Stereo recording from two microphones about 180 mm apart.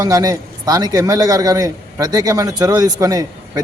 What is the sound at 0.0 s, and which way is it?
A man's voice, 20° right (ahead or behind).